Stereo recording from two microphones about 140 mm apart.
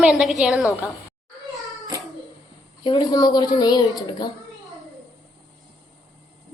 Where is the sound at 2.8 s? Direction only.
30° left (ahead or behind).